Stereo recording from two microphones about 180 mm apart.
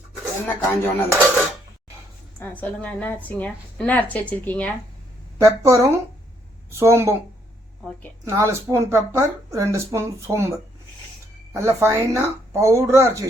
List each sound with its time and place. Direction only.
0.4 s a woman's voice: 10° left (ahead or behind)
5.6 s speech: 20° right (ahead or behind)
8.2 s speech: 15° right (ahead or behind)
11.5 s speech: 15° right (ahead or behind)